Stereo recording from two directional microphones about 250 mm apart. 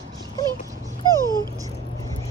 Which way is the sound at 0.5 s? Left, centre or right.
Centre.